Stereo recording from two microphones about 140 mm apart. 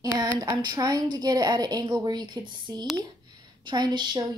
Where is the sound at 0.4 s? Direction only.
30° right (ahead or behind).